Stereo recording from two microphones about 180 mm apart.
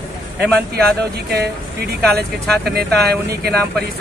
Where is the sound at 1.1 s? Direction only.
65° right (ahead or behind).